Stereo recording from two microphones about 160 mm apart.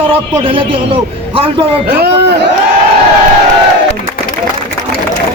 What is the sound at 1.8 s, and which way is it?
Speech, 70° right (ahead or behind).